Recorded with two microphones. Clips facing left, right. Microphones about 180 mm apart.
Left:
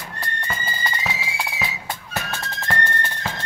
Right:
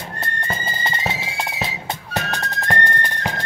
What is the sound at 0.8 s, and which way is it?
Music, 25° right (ahead or behind).